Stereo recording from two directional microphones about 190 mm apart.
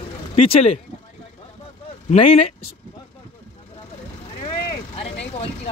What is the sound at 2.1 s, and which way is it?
Speech, 35° left (ahead or behind).